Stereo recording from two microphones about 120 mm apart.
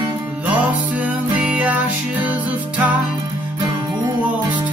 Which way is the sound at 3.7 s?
40° right (ahead or behind).